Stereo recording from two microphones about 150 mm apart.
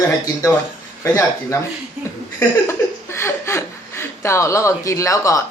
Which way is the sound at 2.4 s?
20° left (ahead or behind).